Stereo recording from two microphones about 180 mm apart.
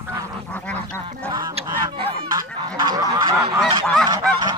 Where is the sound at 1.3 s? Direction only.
20° right (ahead or behind).